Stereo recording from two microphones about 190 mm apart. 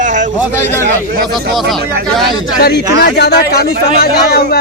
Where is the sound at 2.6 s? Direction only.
65° left (ahead or behind).